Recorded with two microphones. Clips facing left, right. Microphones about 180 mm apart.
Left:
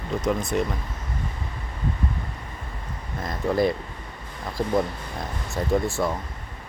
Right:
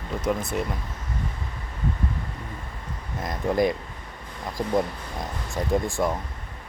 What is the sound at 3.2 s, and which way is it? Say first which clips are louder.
Speech: even; 15° right (ahead or behind).